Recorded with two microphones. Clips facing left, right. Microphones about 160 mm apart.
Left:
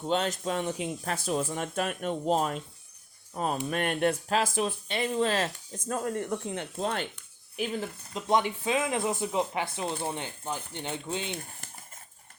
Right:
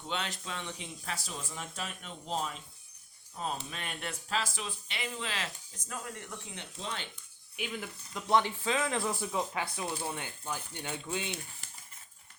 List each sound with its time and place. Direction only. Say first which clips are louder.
0.0 s speech: left 10 dB; 40° left (ahead or behind)
7.5 s speech: left 7 dB; 35° left (ahead or behind)
8.1 s speech: left 2 dB; 20° left (ahead or behind)
11.3 s speech: left 3 dB; 50° left (ahead or behind)